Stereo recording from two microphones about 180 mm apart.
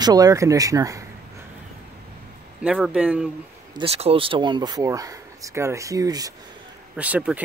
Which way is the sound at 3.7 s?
30° right (ahead or behind).